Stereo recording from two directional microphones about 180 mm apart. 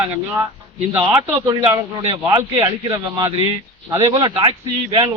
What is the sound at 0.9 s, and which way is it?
A man's voice, 10° right (ahead or behind).